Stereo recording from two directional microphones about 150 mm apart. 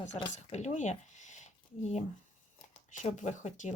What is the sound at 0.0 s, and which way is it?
Speech, 50° left (ahead or behind).